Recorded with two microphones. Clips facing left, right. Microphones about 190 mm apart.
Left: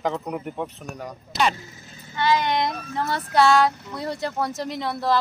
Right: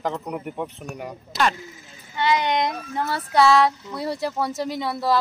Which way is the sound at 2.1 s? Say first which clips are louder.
Even; 15° right (ahead or behind).